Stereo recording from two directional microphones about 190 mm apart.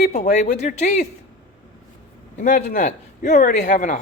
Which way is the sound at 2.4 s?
40° left (ahead or behind).